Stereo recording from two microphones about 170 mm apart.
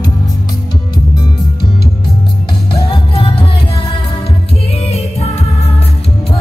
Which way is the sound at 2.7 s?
30° left (ahead or behind).